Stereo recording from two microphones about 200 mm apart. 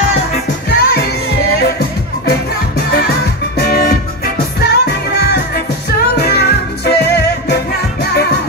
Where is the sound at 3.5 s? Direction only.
50° left (ahead or behind).